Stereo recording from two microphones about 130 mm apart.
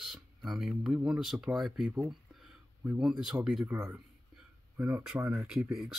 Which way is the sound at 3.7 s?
20° right (ahead or behind).